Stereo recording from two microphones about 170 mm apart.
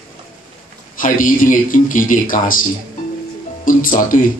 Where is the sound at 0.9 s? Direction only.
55° left (ahead or behind).